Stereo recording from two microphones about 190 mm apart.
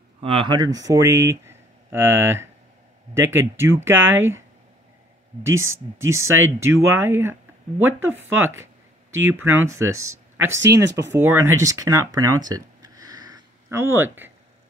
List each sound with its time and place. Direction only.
0.2 s speech: 30° right (ahead or behind); by 4.4 s 10° right (ahead or behind)
5.4 s speech: 15° right (ahead or behind)
8.4 s speech: 10° right (ahead or behind)
10.0 s a sound: 15° right (ahead or behind)
10.5 s speech: 70° right (ahead or behind)
11.1 s speech: 15° right (ahead or behind)